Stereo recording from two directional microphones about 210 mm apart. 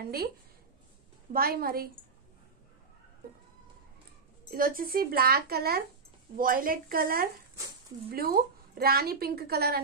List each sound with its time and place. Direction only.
0.0 s a woman's voice: 45° right (ahead or behind)
1.3 s a woman's voice: 45° right (ahead or behind)
4.5 s a woman's voice: 45° right (ahead or behind)